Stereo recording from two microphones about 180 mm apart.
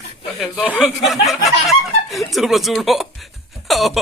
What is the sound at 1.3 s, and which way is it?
Snicker, centre (ahead or behind).